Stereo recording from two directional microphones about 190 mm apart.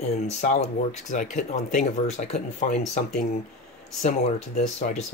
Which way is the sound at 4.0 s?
35° left (ahead or behind).